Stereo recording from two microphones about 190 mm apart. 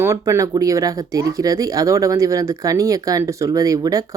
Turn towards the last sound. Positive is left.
turn(degrees=-20)  # may be behind; listen again after turning